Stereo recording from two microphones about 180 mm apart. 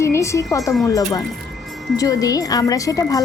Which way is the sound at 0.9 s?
20° left (ahead or behind).